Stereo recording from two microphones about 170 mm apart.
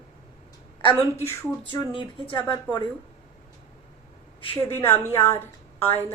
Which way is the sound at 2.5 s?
25° left (ahead or behind).